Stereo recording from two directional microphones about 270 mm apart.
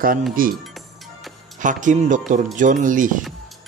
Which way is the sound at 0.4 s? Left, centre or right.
Right.